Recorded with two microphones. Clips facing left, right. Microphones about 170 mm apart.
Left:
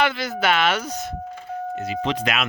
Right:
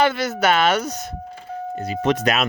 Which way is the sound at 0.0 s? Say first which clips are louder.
Right 3 dB; 40° right (ahead or behind).